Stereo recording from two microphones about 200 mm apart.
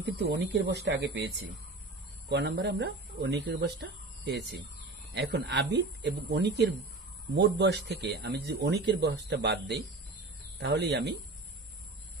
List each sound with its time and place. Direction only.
0.0 s speech: 55° right (ahead or behind)
10.6 s speech: 55° right (ahead or behind)